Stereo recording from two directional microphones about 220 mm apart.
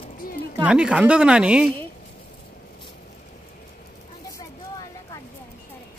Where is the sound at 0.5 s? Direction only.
5° right (ahead or behind).